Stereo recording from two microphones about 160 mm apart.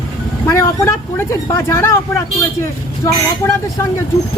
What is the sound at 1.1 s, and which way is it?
Speech, 15° left (ahead or behind).